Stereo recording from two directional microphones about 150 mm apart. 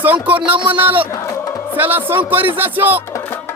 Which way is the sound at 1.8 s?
15° right (ahead or behind).